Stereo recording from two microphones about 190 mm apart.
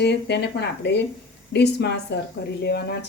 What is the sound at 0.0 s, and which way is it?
Speech, 60° left (ahead or behind).